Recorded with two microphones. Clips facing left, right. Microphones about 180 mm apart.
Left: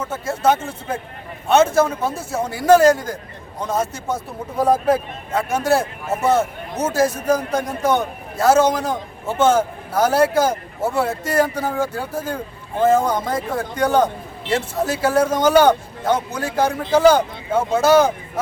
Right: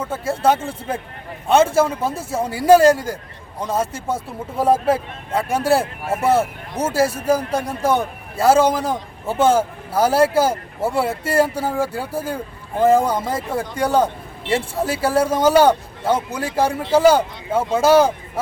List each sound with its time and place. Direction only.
0.0 s a man's voice: 10° right (ahead or behind)
5.5 s speech: 35° right (ahead or behind)
5.8 s a man's voice: 10° right (ahead or behind)